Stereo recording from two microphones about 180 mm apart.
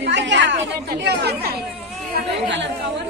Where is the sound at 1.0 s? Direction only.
65° right (ahead or behind).